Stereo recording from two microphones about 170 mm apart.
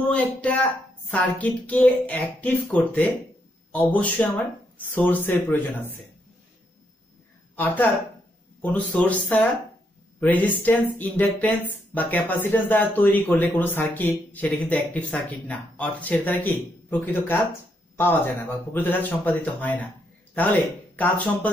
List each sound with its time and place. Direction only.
0.1 s speech: 5° left (ahead or behind)
7.5 s speech: 10° left (ahead or behind)
20.9 s speech: 10° left (ahead or behind)